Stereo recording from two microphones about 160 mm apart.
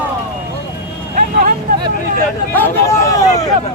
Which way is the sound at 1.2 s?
55° right (ahead or behind).